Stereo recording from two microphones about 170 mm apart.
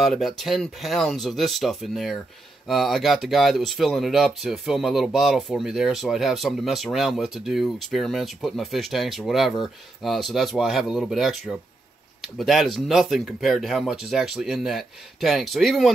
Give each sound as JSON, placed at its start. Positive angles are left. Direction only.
{"t": 0.0, "sound": "speech", "side_deg": 0}